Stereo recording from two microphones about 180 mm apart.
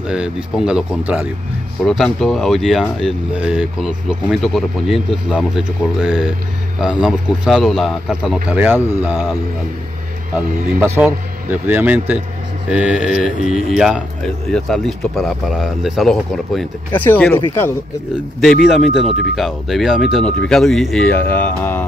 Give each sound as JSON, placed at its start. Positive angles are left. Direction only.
{"t": 0.0, "sound": "speech", "side_deg": -5}
{"t": 10.8, "sound": "speech", "side_deg": -5}
{"t": 13.4, "sound": "speech", "side_deg": -35}
{"t": 13.7, "sound": "speech", "side_deg": 0}
{"t": 18.4, "sound": "speech", "side_deg": 0}